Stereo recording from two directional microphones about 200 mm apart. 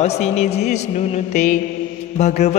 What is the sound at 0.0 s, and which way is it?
Mantra, 35° left (ahead or behind).